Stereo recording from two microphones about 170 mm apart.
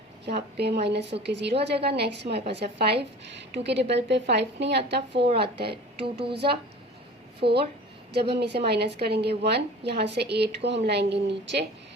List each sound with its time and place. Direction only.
0.3 s a woman's voice: 75° right (ahead or behind)
0.8 s a woman's voice: 85° right
1.7 s a woman's voice: 75° right (ahead or behind)